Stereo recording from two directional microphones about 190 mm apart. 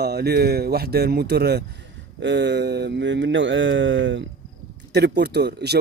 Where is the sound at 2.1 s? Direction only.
65° right (ahead or behind).